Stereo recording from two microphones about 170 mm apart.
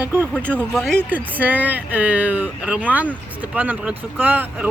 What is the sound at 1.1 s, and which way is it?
Speech, 10° right (ahead or behind).